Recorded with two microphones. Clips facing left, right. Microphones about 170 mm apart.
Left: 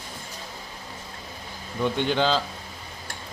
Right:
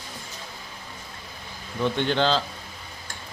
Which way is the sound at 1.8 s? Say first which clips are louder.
Even; 10° left (ahead or behind).